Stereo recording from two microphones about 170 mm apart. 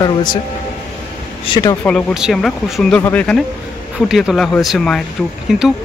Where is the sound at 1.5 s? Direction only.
25° left (ahead or behind).